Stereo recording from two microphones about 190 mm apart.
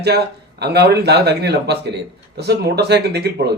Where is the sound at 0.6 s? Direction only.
60° right (ahead or behind).